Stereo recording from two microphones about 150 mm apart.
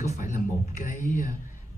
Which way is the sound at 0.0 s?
50° left (ahead or behind).